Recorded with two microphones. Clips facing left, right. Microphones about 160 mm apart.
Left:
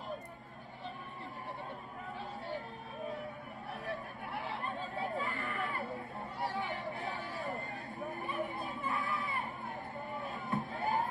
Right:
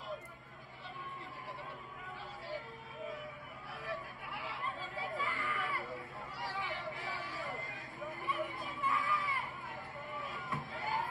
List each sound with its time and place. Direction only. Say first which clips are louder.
3.9 s chatter: left 1 dB; 40° left (ahead or behind)
6.5 s a sound: left 3 dB; 35° left (ahead or behind)
10.1 s crowd: left 5 dB; 35° left (ahead or behind)